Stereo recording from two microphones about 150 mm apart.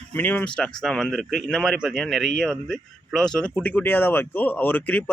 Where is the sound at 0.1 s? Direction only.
10° left (ahead or behind).